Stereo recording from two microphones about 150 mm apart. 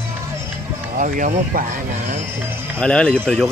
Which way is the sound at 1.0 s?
60° right (ahead or behind).